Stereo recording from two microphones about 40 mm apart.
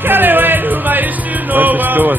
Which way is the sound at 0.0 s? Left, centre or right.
Right.